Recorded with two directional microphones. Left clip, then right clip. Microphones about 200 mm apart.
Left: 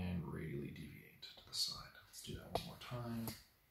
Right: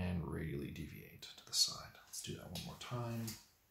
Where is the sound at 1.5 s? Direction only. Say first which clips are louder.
Right 6 dB; 50° right (ahead or behind).